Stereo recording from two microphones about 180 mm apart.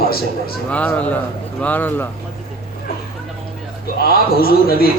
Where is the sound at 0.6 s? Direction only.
10° left (ahead or behind).